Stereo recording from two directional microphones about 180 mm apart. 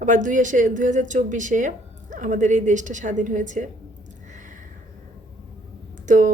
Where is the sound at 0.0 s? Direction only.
45° right (ahead or behind).